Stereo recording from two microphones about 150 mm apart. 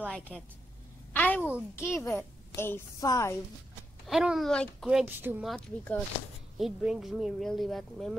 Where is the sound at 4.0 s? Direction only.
5° right (ahead or behind).